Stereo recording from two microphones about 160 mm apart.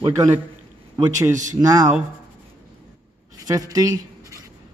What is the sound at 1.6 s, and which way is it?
Speech, 20° right (ahead or behind).